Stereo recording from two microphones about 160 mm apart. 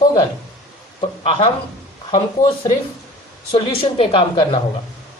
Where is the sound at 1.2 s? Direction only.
35° left (ahead or behind).